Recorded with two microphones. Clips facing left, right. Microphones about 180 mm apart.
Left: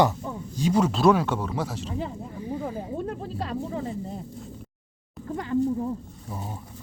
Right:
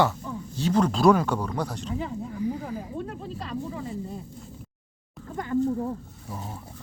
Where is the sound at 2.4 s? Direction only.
25° left (ahead or behind).